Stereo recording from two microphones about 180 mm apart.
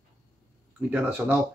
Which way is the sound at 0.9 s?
5° right (ahead or behind).